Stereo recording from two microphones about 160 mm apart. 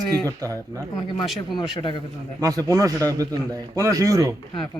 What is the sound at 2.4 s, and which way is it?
Speech, 25° right (ahead or behind).